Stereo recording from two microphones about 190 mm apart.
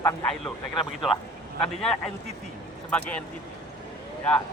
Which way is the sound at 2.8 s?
5° left (ahead or behind).